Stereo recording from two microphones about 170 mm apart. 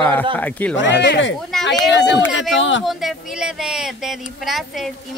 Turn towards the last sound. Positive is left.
turn(degrees=0)  # may be behind; listen again after turning